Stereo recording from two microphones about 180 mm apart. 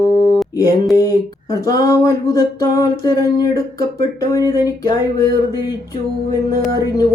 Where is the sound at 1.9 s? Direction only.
20° left (ahead or behind).